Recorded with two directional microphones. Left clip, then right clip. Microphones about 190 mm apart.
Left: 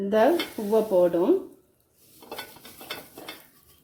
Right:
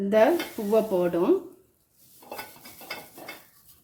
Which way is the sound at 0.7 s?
15° right (ahead or behind).